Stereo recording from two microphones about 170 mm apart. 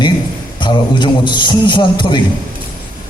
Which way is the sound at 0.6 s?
25° left (ahead or behind).